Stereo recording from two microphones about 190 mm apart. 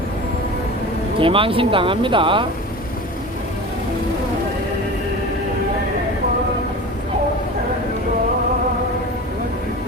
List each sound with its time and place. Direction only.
1.2 s speech: 30° right (ahead or behind)